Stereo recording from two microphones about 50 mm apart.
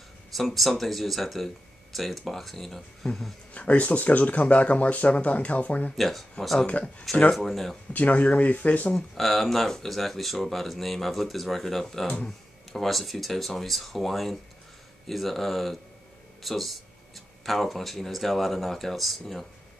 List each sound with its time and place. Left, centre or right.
0.3 s speech: centre
3.5 s speech: left
5.9 s speech: centre
7.3 s speech: centre
7.9 s speech: left
8.9 s speech: centre